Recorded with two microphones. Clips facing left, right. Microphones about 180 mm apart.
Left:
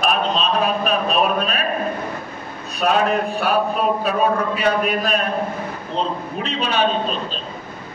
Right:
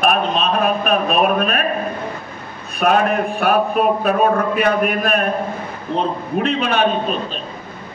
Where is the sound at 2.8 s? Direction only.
55° right (ahead or behind).